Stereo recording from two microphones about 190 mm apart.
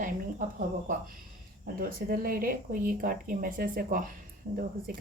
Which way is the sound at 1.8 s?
50° right (ahead or behind).